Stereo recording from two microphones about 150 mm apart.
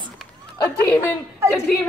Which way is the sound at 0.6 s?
15° left (ahead or behind).